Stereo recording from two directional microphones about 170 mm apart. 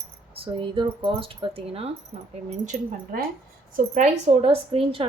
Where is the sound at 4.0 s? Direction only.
35° right (ahead or behind).